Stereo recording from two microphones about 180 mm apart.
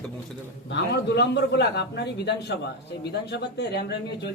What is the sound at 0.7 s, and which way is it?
A man's voice, 75° left (ahead or behind).